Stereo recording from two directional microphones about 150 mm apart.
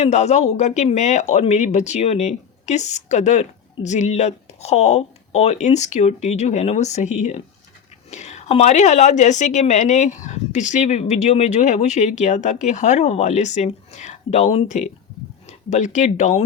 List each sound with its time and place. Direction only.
0.0 s speech: 50° left (ahead or behind)